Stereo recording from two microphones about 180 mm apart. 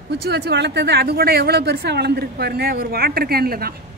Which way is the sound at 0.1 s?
70° right (ahead or behind).